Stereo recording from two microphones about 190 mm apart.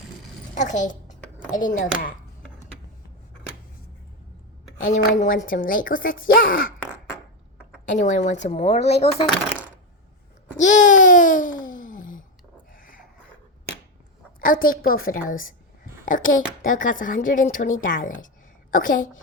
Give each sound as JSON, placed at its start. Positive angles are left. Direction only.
{"t": 0.5, "sound": "a child's voice", "side_deg": 40}
{"t": 4.8, "sound": "a woman's voice", "side_deg": 40}
{"t": 7.9, "sound": "speech", "side_deg": 40}
{"t": 10.6, "sound": "babbling", "side_deg": 40}
{"t": 12.7, "sound": "dog", "side_deg": 45}
{"t": 14.4, "sound": "a woman's voice", "side_deg": 45}